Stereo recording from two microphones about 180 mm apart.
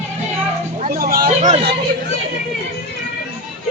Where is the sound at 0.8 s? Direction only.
50° right (ahead or behind).